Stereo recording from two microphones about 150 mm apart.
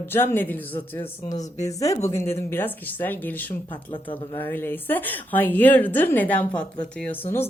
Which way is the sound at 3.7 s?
35° left (ahead or behind).